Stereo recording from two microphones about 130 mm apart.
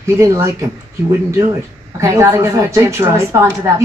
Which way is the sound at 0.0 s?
20° right (ahead or behind).